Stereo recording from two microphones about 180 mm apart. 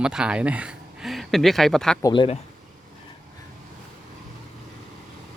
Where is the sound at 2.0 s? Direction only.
25° left (ahead or behind).